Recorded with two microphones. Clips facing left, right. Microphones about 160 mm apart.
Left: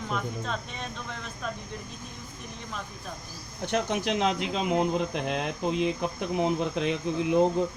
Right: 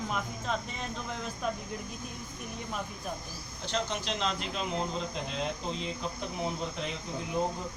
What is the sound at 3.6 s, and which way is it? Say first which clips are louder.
Speech: left 6 dB; 60° left (ahead or behind).